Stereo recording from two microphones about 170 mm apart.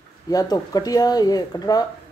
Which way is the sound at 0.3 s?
20° left (ahead or behind).